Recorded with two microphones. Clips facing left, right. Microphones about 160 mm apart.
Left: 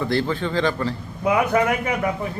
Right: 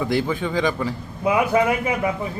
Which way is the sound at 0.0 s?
10° right (ahead or behind).